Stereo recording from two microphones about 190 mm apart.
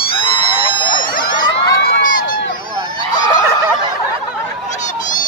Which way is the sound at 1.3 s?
20° left (ahead or behind).